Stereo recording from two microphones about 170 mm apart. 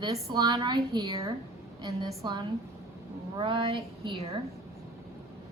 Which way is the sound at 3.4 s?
30° right (ahead or behind).